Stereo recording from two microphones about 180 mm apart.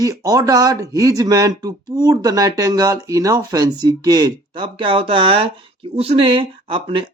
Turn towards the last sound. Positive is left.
turn(degrees=-30)  # may be behind; listen again after turning